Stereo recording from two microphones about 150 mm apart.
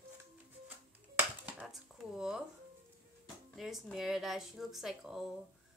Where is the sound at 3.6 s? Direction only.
Centre (ahead or behind).